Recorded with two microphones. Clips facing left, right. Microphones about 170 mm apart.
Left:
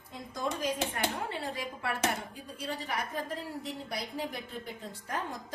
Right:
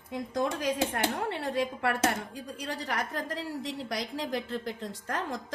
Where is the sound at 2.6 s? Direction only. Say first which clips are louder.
Right 2 dB; 90° right.